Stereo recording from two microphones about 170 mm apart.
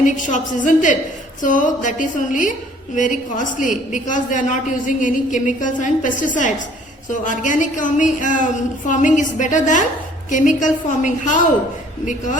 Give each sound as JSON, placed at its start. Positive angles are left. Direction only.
{"t": 0.0, "sound": "a woman's voice", "side_deg": 50}